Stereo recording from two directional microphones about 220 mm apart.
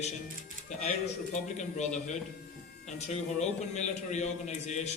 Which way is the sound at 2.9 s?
30° left (ahead or behind).